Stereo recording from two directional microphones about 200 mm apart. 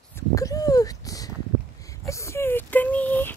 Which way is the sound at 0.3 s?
15° left (ahead or behind).